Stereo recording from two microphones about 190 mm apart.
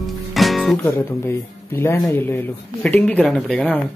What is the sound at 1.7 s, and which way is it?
Speech, 15° left (ahead or behind).